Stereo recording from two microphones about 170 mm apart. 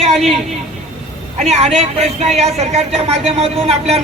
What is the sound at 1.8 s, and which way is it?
A man's voice, 40° right (ahead or behind).